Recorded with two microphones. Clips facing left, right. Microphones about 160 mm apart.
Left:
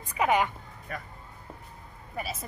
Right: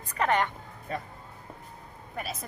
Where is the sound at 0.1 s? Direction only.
10° left (ahead or behind).